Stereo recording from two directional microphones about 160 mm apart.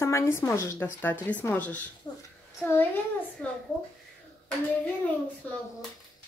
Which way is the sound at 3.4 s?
10° left (ahead or behind).